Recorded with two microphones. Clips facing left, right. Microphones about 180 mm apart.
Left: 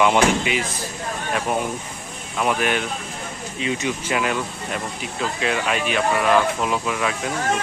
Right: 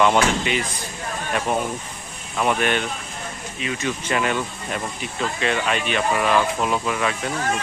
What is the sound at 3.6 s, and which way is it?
Speech, 20° left (ahead or behind).